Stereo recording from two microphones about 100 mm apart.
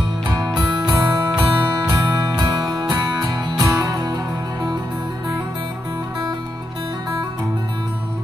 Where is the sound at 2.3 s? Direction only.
45° right (ahead or behind).